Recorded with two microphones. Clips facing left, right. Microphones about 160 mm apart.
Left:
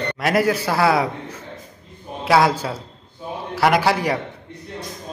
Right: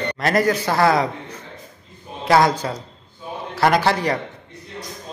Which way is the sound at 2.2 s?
5° left (ahead or behind).